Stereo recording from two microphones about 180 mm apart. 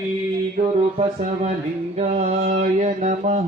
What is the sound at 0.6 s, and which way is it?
Speech, 35° right (ahead or behind).